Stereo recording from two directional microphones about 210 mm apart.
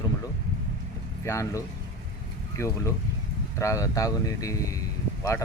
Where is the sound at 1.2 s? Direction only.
15° left (ahead or behind).